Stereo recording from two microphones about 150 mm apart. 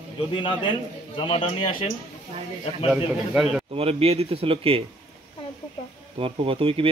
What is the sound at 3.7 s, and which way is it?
A man's voice, 40° right (ahead or behind).